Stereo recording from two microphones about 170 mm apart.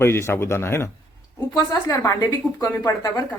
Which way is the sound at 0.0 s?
15° left (ahead or behind).